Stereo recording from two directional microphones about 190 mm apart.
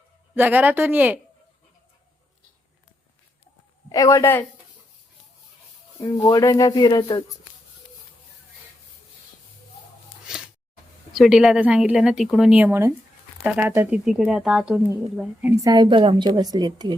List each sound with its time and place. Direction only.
0.3 s speech: 10° right (ahead or behind)
3.8 s speech: 20° left (ahead or behind)
6.0 s speech: 15° left (ahead or behind)
11.1 s speech: centre (ahead or behind)
15.7 s a woman's voice: 25° right (ahead or behind)